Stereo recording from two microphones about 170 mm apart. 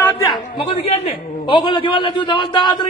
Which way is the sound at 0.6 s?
35° left (ahead or behind).